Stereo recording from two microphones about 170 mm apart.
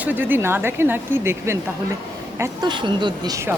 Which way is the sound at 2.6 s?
25° right (ahead or behind).